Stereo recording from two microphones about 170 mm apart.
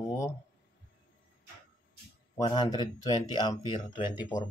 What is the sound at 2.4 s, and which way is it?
Speech, 25° left (ahead or behind).